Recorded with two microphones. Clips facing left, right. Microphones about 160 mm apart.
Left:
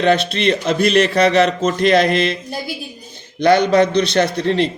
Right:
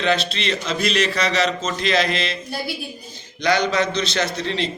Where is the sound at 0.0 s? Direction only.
55° left (ahead or behind).